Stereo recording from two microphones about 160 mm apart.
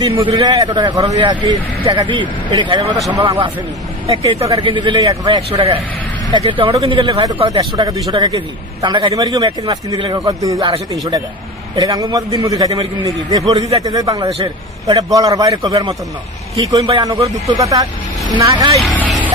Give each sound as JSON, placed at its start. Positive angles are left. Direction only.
{"t": 0.0, "sound": "a man's voice", "side_deg": -25}
{"t": 5.5, "sound": "a man's voice", "side_deg": -40}
{"t": 11.8, "sound": "a man's voice", "side_deg": -20}
{"t": 14.3, "sound": "a man's voice", "side_deg": -35}
{"t": 18.8, "sound": "vehicle", "side_deg": 0}